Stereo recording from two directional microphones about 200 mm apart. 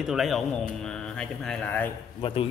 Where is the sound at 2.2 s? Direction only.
30° left (ahead or behind).